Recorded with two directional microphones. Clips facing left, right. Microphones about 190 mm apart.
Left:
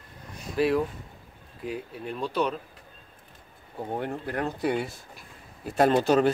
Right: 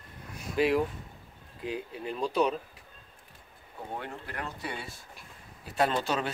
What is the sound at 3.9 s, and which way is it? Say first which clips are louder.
Speech: left 8 dB; 45° left (ahead or behind).